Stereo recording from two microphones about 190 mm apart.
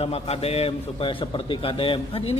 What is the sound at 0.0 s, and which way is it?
A man's voice, 30° left (ahead or behind).